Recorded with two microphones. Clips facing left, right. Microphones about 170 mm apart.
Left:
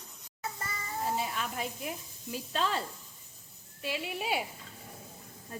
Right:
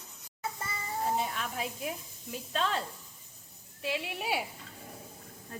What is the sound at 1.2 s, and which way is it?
A woman's voice, centre (ahead or behind).